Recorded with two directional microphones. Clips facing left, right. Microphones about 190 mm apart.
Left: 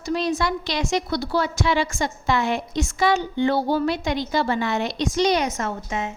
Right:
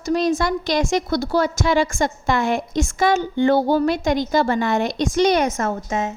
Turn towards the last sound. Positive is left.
turn(degrees=-40)  # may be behind; listen again after turning